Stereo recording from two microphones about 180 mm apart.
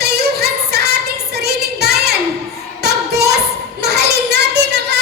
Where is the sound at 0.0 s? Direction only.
65° right (ahead or behind).